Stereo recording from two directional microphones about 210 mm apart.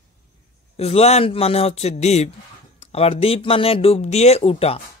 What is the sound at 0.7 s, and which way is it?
Speech, 30° left (ahead or behind).